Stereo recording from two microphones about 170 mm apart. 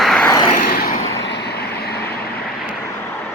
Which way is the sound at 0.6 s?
60° left (ahead or behind).